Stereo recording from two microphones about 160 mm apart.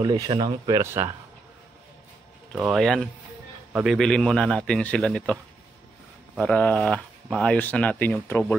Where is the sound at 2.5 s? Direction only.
Centre (ahead or behind).